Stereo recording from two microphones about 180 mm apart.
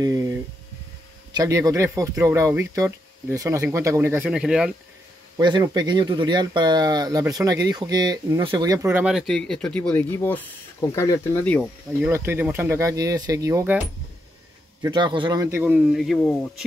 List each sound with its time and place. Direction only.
0.0 s speech: 20° right (ahead or behind)
1.3 s speech: 20° right (ahead or behind); by 4.7 s 5° right (ahead or behind)
5.4 s speech: 20° right (ahead or behind); by 11.6 s 10° left (ahead or behind)
12.0 s speech: 15° right (ahead or behind)
14.8 s speech: 25° right (ahead or behind)
15.4 s speech: 10° right (ahead or behind)
16.0 s speech: centre (ahead or behind)